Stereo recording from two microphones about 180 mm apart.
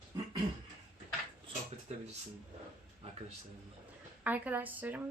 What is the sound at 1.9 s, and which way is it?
Speech, 40° right (ahead or behind).